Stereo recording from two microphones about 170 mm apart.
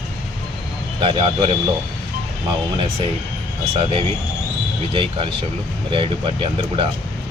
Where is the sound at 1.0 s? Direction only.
35° right (ahead or behind).